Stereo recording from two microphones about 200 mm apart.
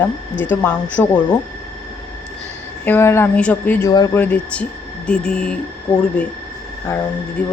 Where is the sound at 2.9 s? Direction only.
10° left (ahead or behind).